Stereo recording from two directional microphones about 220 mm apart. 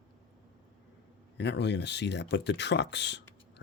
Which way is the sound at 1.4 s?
50° left (ahead or behind).